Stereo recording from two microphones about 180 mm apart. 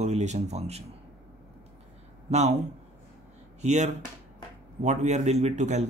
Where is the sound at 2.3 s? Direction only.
40° right (ahead or behind).